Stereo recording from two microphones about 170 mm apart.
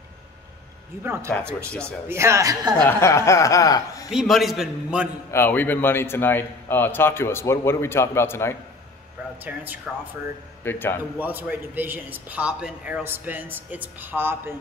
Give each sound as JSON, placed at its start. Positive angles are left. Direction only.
{"t": 1.0, "sound": "speech", "side_deg": -15}
{"t": 2.8, "sound": "speech", "side_deg": 15}
{"t": 4.1, "sound": "a man's voice", "side_deg": 0}
{"t": 5.3, "sound": "a man's voice", "side_deg": 10}
{"t": 9.4, "sound": "speech", "side_deg": -10}
{"t": 10.6, "sound": "a man's voice", "side_deg": 10}
{"t": 11.1, "sound": "speech", "side_deg": -10}